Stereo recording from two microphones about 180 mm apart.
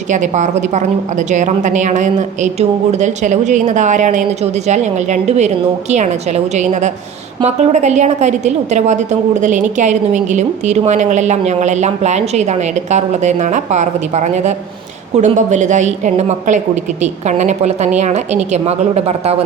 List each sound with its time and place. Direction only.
0.1 s a woman's voice: 40° right (ahead or behind)